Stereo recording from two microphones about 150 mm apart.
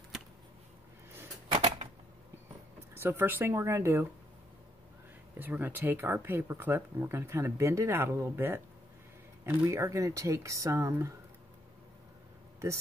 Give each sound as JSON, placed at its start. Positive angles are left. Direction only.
{"t": 1.5, "sound": "typewriter", "side_deg": -40}
{"t": 2.9, "sound": "speech", "side_deg": -15}
{"t": 5.4, "sound": "speech", "side_deg": -10}